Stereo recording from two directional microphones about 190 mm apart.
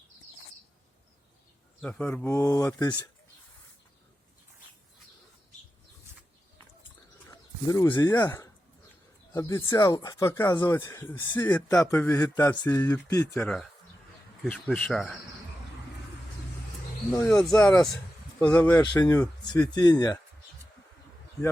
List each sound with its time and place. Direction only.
1.8 s speech: 10° left (ahead or behind)
7.7 s speech: 20° left (ahead or behind)
13.4 s speech: 5° left (ahead or behind)
17.1 s speech: 10° left (ahead or behind)
18.8 s speech: 20° left (ahead or behind)